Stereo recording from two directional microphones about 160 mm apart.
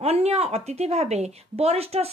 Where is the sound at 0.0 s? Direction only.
40° right (ahead or behind).